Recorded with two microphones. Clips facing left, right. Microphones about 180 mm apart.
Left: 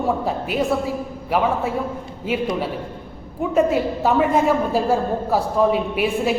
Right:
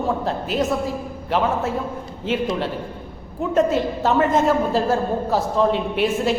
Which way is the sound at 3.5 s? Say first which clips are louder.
Left 1 dB; 10° left (ahead or behind).